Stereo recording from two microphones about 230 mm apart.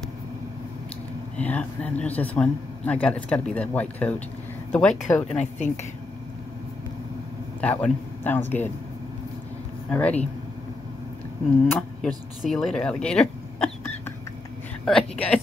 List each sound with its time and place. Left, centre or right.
1.3 s speech: centre
5.4 s speech: left
7.6 s speech: centre
9.8 s speech: centre
11.6 s speech: centre